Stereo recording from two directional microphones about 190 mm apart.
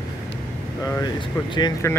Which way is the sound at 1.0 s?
25° left (ahead or behind).